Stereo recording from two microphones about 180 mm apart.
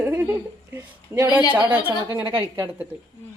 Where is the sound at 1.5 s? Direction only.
10° right (ahead or behind).